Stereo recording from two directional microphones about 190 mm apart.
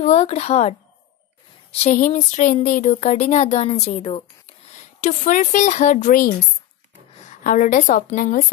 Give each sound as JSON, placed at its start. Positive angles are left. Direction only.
{"t": 0.0, "sound": "a woman's voice", "side_deg": 35}